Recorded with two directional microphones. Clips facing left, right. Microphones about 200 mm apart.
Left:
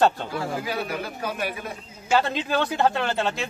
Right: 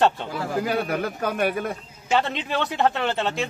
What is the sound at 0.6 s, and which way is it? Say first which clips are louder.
A man's voice: right 5 dB; 55° right (ahead or behind).